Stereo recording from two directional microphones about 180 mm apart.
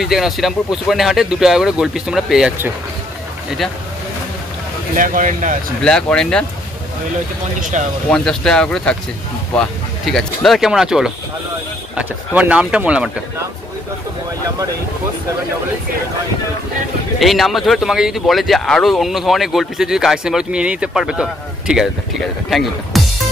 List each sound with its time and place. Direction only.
0.0 s speech: centre (ahead or behind)
4.9 s speech: 50° right (ahead or behind)
5.8 s speech: 5° left (ahead or behind)
7.6 s speech: 40° right (ahead or behind)
8.1 s speech: 5° left (ahead or behind)
17.2 s speech: centre (ahead or behind)